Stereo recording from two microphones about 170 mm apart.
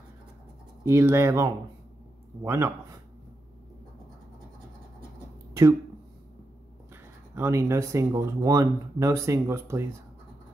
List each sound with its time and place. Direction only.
0.8 s speech: 15° right (ahead or behind)
5.5 s a sound: 15° right (ahead or behind)
7.3 s speech: 15° right (ahead or behind)